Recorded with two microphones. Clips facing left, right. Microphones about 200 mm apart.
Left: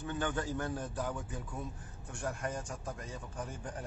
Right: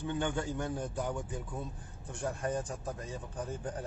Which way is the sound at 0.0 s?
20° right (ahead or behind).